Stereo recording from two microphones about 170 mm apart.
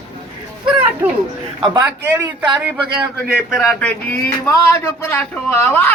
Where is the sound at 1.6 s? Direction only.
20° right (ahead or behind).